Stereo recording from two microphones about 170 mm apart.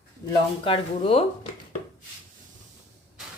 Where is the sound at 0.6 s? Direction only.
30° left (ahead or behind).